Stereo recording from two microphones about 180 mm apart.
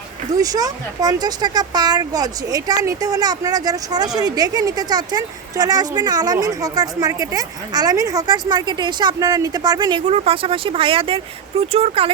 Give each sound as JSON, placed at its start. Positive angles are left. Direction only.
{"t": 0.3, "sound": "speech", "side_deg": -20}